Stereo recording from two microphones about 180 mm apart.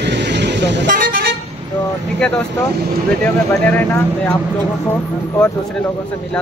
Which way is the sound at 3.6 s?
10° left (ahead or behind).